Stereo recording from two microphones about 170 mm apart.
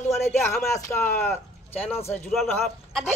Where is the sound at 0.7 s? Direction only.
15° left (ahead or behind).